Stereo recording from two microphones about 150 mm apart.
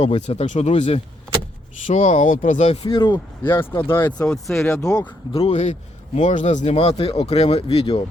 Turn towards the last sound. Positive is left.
turn(degrees=40)  # may be behind; listen again after turning